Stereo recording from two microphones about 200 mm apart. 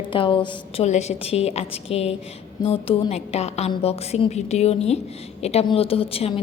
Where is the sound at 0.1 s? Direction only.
25° left (ahead or behind).